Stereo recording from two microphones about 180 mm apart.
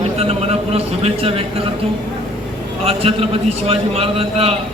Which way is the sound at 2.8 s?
35° right (ahead or behind).